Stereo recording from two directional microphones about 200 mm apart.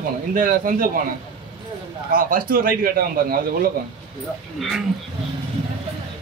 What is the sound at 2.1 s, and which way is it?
A man's voice, 45° right (ahead or behind).